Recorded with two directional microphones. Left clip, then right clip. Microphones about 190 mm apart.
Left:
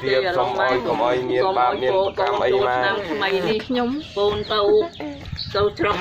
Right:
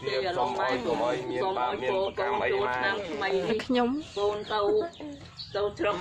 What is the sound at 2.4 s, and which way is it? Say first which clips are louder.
Speech: left 10 dB; 55° left (ahead or behind).